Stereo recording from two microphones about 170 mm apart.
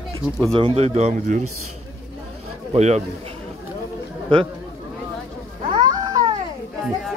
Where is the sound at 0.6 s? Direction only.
35° right (ahead or behind).